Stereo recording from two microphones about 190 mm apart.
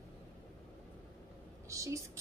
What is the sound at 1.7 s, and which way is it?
Speech, 15° right (ahead or behind).